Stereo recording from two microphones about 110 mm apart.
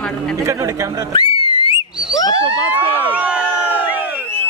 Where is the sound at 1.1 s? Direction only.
55° left (ahead or behind).